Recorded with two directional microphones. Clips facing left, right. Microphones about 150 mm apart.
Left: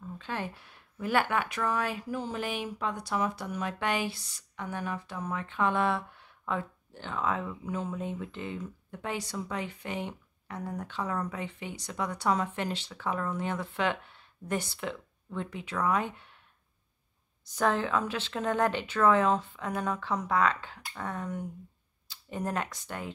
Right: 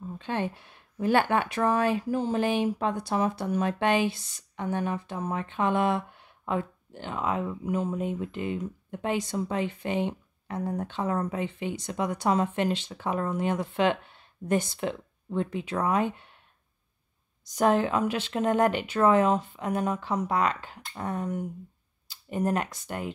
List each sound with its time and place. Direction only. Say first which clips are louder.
0.2 s speech: right 6 dB; 25° right (ahead or behind)
17.5 s speech: right 5 dB; 15° right (ahead or behind)
22.0 s a sound: right 6 dB; 10° right (ahead or behind)